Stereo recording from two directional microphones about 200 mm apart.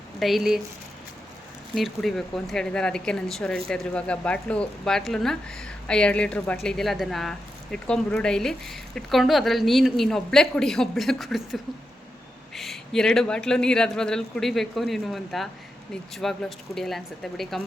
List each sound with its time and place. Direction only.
0.2 s speech: centre (ahead or behind)
1.7 s speech: centre (ahead or behind)